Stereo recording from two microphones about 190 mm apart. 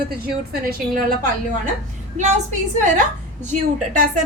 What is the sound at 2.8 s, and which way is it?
Speech, 40° right (ahead or behind).